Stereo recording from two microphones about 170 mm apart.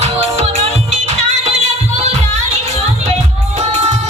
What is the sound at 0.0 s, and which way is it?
Music, 40° right (ahead or behind).